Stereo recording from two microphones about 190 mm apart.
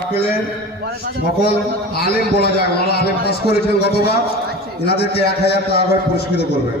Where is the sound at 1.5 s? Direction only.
55° left (ahead or behind).